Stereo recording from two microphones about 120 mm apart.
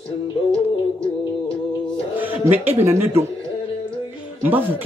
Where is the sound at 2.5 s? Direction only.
65° right (ahead or behind).